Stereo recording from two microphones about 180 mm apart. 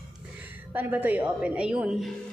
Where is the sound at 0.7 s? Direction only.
10° right (ahead or behind).